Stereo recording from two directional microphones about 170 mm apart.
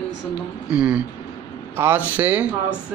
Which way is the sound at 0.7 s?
5° right (ahead or behind).